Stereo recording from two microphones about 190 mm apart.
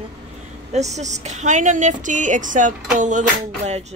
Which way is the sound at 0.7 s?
35° right (ahead or behind).